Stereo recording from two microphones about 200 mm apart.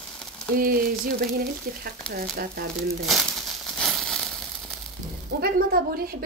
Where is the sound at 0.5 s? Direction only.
45° right (ahead or behind).